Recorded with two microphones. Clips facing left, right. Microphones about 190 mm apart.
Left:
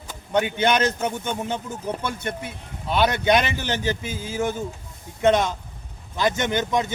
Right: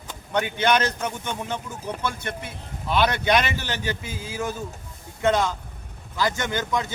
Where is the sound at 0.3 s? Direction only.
20° left (ahead or behind).